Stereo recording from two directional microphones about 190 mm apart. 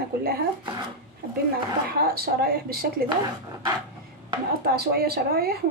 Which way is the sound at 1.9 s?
55° right (ahead or behind).